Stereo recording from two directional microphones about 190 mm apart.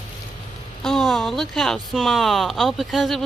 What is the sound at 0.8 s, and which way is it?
Speech, centre (ahead or behind).